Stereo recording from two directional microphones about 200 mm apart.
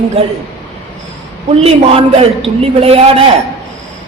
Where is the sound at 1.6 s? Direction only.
30° right (ahead or behind).